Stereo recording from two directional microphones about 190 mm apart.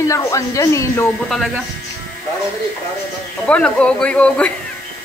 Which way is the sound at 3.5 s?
5° left (ahead or behind).